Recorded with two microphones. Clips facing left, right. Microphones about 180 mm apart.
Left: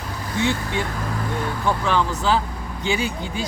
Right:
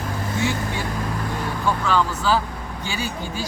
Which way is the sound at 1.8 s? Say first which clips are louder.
Even; 20° left (ahead or behind).